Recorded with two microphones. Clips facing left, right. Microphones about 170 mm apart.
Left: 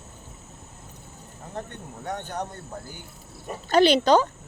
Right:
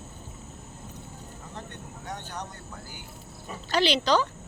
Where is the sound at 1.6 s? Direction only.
55° left (ahead or behind).